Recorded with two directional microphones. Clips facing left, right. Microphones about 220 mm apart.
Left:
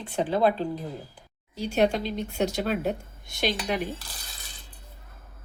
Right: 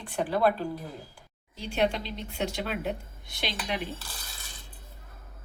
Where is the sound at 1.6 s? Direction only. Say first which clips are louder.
Left 4 dB; 45° left (ahead or behind).